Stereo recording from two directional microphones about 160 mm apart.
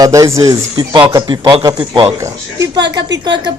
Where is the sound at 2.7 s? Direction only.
90° right.